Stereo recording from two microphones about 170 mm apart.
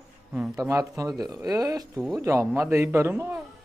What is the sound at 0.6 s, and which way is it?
A man's voice, 20° right (ahead or behind).